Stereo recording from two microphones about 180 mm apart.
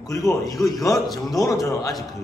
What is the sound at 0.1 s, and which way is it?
A man's voice, 20° left (ahead or behind).